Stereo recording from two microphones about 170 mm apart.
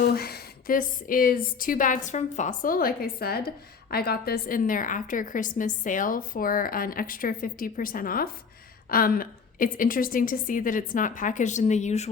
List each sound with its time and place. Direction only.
0.0 s a woman's voice: 65° left (ahead or behind); by 12.1 s 40° left (ahead or behind)